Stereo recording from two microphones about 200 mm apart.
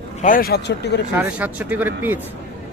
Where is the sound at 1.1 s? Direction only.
5° right (ahead or behind).